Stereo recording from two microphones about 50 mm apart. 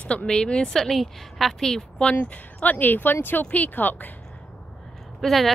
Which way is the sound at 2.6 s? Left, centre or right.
Left.